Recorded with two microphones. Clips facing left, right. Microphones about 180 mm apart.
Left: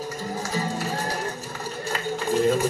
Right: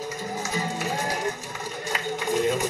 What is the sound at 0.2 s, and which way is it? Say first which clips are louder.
Music: left 2 dB; 20° right (ahead or behind).